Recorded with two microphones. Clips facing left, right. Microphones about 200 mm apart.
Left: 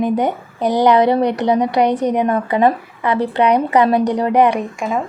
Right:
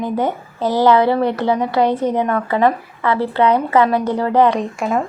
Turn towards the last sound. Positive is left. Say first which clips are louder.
# right 1 dB
turn(degrees=10)  # may be behind; listen again after turning